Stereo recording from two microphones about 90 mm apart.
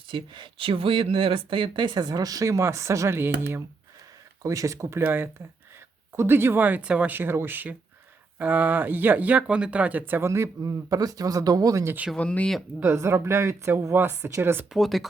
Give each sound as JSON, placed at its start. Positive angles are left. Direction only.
{"t": 0.1, "sound": "speech", "side_deg": -65}
{"t": 4.4, "sound": "speech", "side_deg": -35}
{"t": 12.1, "sound": "speech", "side_deg": 15}
{"t": 12.8, "sound": "speech", "side_deg": -30}
{"t": 14.7, "sound": "speech", "side_deg": 0}